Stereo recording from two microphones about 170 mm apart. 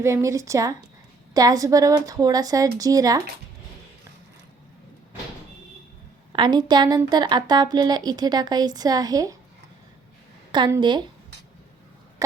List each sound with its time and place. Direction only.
0.0 s speech: 15° right (ahead or behind)
6.3 s speech: 25° right (ahead or behind)
10.7 s speech: 25° right (ahead or behind)